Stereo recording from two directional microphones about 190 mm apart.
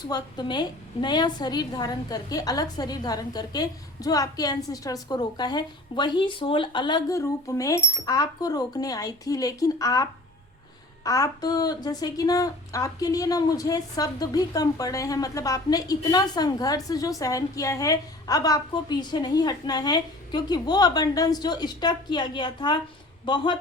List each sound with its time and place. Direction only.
0.0 s speech: 20° left (ahead or behind)